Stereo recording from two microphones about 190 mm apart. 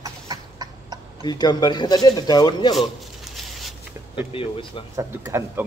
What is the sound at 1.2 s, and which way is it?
Speech, 20° left (ahead or behind).